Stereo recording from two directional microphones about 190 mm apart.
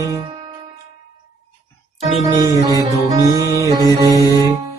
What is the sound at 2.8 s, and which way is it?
Music, 20° right (ahead or behind).